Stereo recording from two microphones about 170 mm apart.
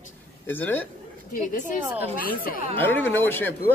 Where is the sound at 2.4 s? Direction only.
60° left (ahead or behind).